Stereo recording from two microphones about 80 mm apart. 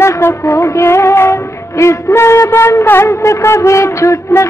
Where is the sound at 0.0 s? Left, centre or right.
Left.